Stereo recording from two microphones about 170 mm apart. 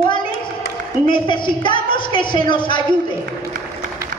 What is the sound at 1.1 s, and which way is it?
A woman's voice, 30° left (ahead or behind).